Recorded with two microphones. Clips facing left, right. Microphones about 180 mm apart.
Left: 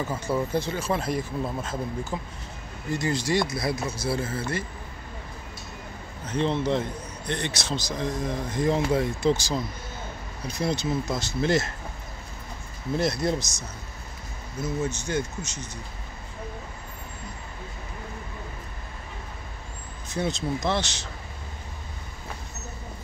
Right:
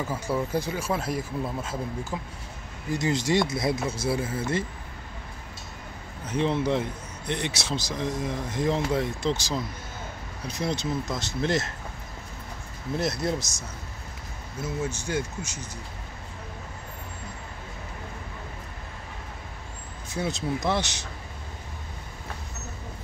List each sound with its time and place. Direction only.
0.0 s speech: 5° right (ahead or behind)
2.9 s speech: 20° right (ahead or behind)
6.2 s a man's voice: 5° right (ahead or behind)
10.6 s a man's voice: centre (ahead or behind)
12.9 s a man's voice: centre (ahead or behind)
14.6 s speech: 10° right (ahead or behind)
20.2 s speech: 5° right (ahead or behind)